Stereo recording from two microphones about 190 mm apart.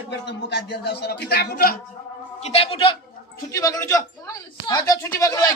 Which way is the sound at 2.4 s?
30° left (ahead or behind).